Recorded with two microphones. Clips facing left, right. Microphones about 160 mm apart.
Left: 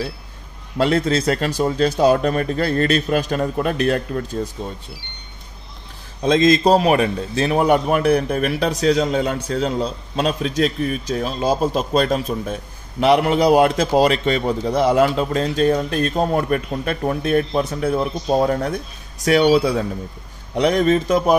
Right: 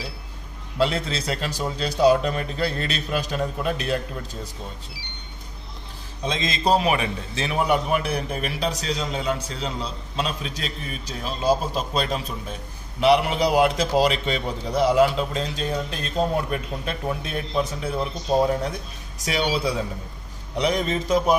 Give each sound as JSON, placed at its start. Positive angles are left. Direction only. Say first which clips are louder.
{"t": 0.7, "sound": "a man's voice", "louder": "left 6 dB", "side_deg": 50}
{"t": 6.2, "sound": "a man's voice", "louder": "left 10 dB", "side_deg": 50}